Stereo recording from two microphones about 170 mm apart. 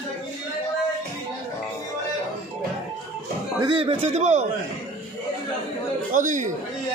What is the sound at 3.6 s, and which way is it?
Speech, 30° right (ahead or behind).